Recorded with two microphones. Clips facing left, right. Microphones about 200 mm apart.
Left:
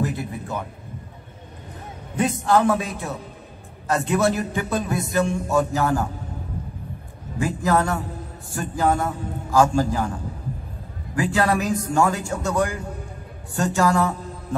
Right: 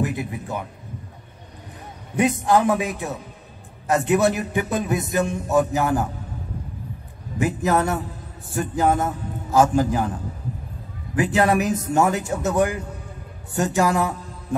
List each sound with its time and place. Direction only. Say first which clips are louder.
0.0 s a man's voice: right 1 dB; 15° right (ahead or behind)
2.1 s a man's voice: right 1 dB; 15° right (ahead or behind)
7.3 s a man's voice: right 1 dB; 20° right (ahead or behind)
11.1 s a man's voice: right 2 dB; 20° right (ahead or behind)